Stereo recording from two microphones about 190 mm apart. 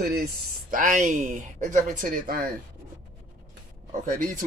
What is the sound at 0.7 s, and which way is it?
Speech, 45° right (ahead or behind).